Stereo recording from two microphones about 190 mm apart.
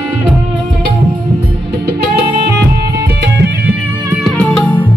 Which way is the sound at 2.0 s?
55° right (ahead or behind).